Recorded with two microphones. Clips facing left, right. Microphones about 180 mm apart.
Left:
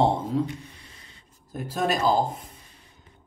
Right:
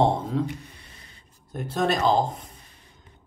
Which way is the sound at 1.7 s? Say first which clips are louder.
Right 1 dB; 10° left (ahead or behind).